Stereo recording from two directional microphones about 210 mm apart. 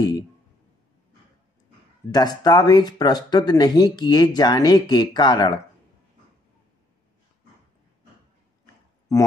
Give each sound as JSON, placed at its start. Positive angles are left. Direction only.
{"t": 2.0, "sound": "speech", "side_deg": 20}